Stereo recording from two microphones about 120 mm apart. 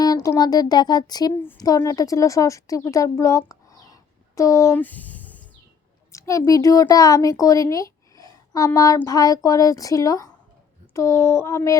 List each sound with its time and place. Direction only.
0.0 s a woman's voice: 30° left (ahead or behind); by 5.5 s 15° left (ahead or behind)
6.1 s a woman's voice: 25° left (ahead or behind)